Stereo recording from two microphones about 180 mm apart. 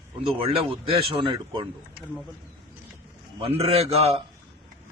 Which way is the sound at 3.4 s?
30° right (ahead or behind).